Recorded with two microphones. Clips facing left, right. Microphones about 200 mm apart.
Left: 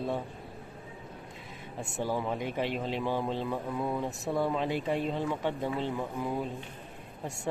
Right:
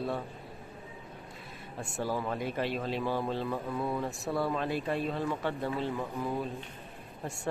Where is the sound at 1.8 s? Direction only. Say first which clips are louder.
Left 1 dB; 20° left (ahead or behind).